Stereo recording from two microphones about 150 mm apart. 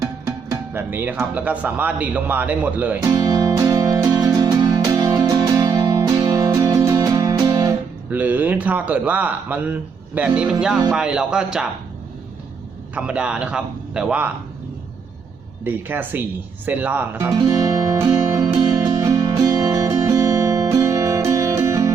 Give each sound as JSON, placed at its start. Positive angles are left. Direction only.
{"t": 0.0, "sound": "music", "side_deg": -20}
{"t": 1.2, "sound": "a man's voice", "side_deg": -10}
{"t": 3.1, "sound": "music", "side_deg": -25}
{"t": 8.1, "sound": "a man's voice", "side_deg": -10}
{"t": 12.9, "sound": "a man's voice", "side_deg": -10}
{"t": 15.6, "sound": "a man's voice", "side_deg": -10}
{"t": 17.3, "sound": "music", "side_deg": -25}